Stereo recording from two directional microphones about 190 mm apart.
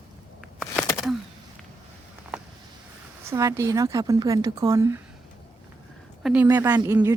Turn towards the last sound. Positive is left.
turn(degrees=-15)  # may be behind; listen again after turning